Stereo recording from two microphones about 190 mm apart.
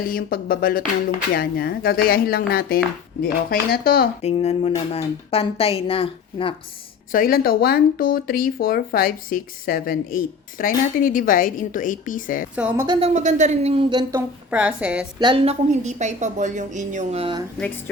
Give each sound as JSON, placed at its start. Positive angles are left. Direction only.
{"t": 0.0, "sound": "speech", "side_deg": 50}
{"t": 4.2, "sound": "speech", "side_deg": 35}
{"t": 7.1, "sound": "speech", "side_deg": 50}
{"t": 12.5, "sound": "a woman's voice", "side_deg": -10}
{"t": 13.0, "sound": "a woman's voice", "side_deg": -40}
{"t": 14.1, "sound": "a woman's voice", "side_deg": -5}
{"t": 15.2, "sound": "a woman's voice", "side_deg": -30}